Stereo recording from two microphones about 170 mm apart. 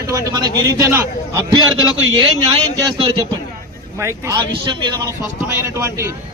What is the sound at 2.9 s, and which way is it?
Speech, 30° right (ahead or behind).